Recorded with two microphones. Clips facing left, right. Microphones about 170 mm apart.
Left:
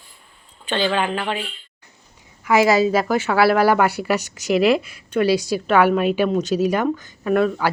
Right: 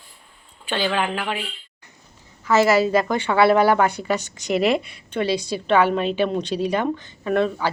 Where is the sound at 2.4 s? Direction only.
15° left (ahead or behind).